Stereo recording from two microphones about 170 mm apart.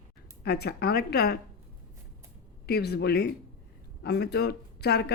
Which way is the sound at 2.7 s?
75° left (ahead or behind).